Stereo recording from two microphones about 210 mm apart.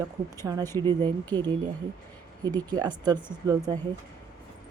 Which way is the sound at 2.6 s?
20° right (ahead or behind).